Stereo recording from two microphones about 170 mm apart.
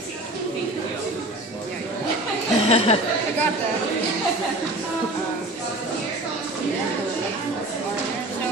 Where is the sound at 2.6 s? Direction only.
35° left (ahead or behind).